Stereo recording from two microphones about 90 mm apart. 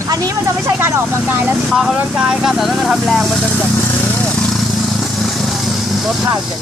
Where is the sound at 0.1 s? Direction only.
40° right (ahead or behind).